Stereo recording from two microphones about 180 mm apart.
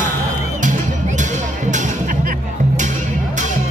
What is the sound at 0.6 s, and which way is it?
Music, 45° right (ahead or behind).